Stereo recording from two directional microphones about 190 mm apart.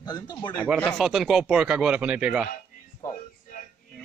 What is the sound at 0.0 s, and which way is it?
Speech, 20° left (ahead or behind).